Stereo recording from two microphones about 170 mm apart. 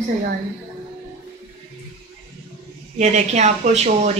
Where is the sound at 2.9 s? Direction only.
40° right (ahead or behind).